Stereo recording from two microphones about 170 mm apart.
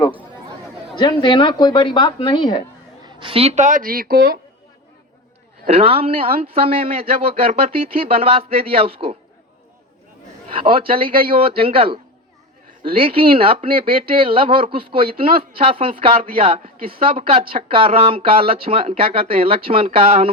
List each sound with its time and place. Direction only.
0.9 s speech: 25° left (ahead or behind)
3.2 s speech: 30° right (ahead or behind); by 4.4 s 65° right (ahead or behind)
5.6 s speech: 35° right (ahead or behind)
10.5 s speech: 30° right (ahead or behind)